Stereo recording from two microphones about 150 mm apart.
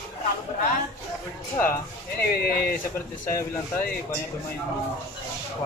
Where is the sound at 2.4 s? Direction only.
90° left.